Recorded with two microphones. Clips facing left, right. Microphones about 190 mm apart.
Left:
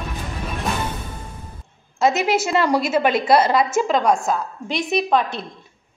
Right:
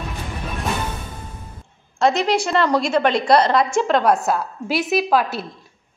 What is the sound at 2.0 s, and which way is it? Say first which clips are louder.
A woman's voice: even; 5° left (ahead or behind).